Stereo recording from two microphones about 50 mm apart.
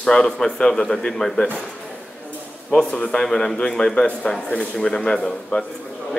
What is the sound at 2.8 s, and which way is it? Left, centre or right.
A man's voice, centre.